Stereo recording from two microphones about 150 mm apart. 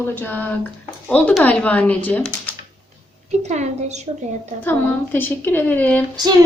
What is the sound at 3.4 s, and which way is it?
Speech, 50° right (ahead or behind).